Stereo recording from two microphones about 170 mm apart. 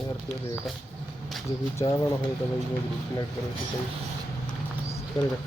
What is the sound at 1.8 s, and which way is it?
Speech, 15° left (ahead or behind).